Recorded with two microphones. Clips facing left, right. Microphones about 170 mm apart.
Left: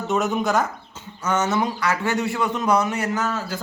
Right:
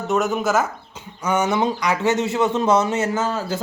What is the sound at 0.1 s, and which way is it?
Speech, centre (ahead or behind).